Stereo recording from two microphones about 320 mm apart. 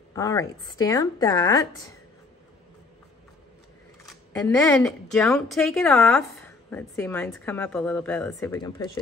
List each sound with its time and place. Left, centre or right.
0.1 s speech: centre
4.0 s speech: centre